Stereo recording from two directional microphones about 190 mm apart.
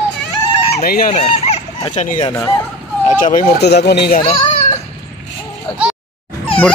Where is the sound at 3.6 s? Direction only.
60° left (ahead or behind).